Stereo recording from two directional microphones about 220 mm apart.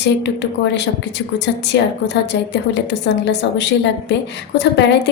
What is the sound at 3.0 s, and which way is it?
A woman's voice, 50° left (ahead or behind).